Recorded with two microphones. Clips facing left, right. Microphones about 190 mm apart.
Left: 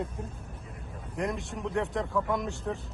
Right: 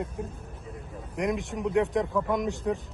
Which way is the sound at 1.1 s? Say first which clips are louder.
Right 4 dB; 15° right (ahead or behind).